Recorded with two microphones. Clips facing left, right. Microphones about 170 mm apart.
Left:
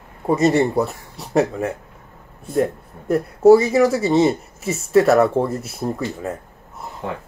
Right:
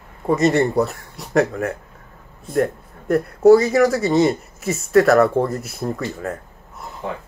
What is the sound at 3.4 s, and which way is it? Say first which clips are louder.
Speech: even; 30° left (ahead or behind).